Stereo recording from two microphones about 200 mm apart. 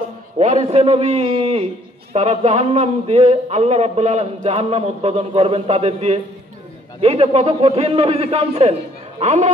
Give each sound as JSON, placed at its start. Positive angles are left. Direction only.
{"t": 0.4, "sound": "speech", "side_deg": -35}